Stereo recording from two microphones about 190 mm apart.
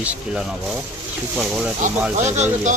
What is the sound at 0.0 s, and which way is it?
Speech, 10° right (ahead or behind).